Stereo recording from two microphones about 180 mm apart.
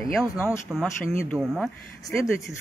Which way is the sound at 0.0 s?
Centre (ahead or behind).